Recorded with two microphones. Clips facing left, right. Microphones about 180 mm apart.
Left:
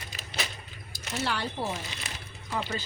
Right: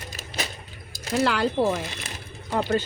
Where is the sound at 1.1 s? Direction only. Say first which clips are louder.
Right 10 dB; 90° right.